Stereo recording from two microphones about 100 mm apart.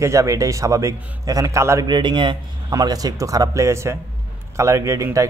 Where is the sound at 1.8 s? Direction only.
50° right (ahead or behind).